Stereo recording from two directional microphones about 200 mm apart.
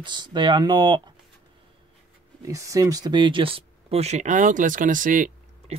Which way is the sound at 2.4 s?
15° right (ahead or behind).